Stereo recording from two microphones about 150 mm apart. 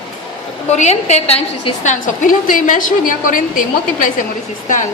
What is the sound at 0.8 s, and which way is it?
A woman's voice, 50° left (ahead or behind).